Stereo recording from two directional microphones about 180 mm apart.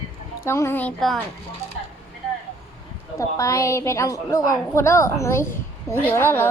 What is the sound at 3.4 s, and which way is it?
A woman's voice, 15° left (ahead or behind).